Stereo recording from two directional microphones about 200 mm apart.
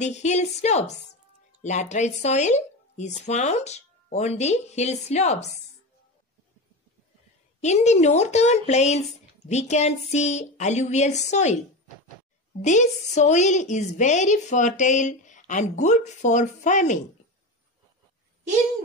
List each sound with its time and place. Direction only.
0.0 s a woman's voice: 35° left (ahead or behind)
7.6 s a woman's voice: 35° left (ahead or behind)
12.6 s a woman's voice: 35° left (ahead or behind)